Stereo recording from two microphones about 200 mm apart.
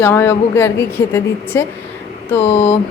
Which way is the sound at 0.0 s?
10° left (ahead or behind).